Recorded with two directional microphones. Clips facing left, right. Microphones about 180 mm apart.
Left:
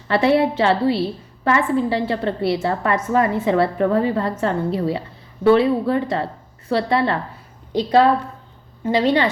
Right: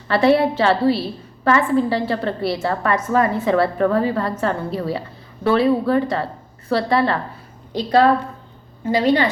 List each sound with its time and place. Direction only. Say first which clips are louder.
0.1 s a woman's voice: right 1 dB; 20° left (ahead or behind)